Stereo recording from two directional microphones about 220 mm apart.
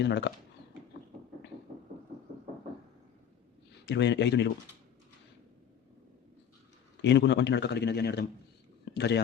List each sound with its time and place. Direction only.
0.0 s a man's voice: 50° left (ahead or behind)
3.8 s a man's voice: 50° left (ahead or behind)
7.0 s a man's voice: 50° left (ahead or behind)
8.8 s a sound: 50° left (ahead or behind)